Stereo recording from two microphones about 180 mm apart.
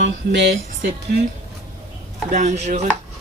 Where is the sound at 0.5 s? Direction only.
50° right (ahead or behind).